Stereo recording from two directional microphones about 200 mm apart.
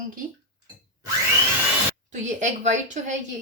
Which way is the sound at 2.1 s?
35° right (ahead or behind).